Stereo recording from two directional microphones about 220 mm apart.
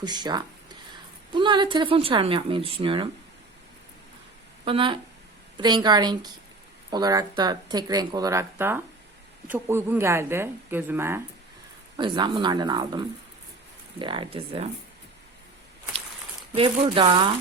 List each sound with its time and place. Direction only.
0.0 s speech: 20° right (ahead or behind)
4.6 s speech: 25° right (ahead or behind)
11.9 s speech: 20° right (ahead or behind)
16.6 s speech: 25° right (ahead or behind)